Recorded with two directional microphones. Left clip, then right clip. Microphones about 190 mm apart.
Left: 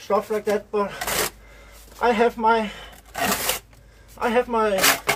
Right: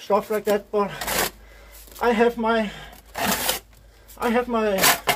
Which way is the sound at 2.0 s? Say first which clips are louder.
Even; 25° right (ahead or behind).